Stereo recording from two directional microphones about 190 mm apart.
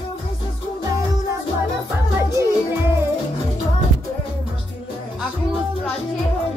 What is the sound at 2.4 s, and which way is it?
Music, 15° right (ahead or behind).